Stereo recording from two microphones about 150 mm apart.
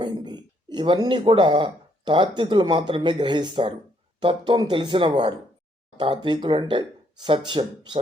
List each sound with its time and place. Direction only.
0.0 s speech: 30° right (ahead or behind)